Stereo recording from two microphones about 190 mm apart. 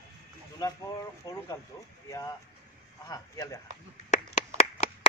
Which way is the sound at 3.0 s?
20° left (ahead or behind).